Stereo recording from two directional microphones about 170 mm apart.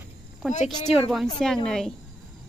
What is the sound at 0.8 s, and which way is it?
Speech, 35° left (ahead or behind).